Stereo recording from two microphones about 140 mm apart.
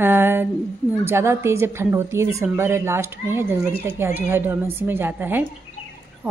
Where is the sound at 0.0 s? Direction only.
15° right (ahead or behind).